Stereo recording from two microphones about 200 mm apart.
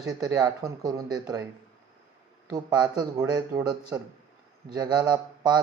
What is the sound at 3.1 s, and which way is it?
Speech, 15° right (ahead or behind).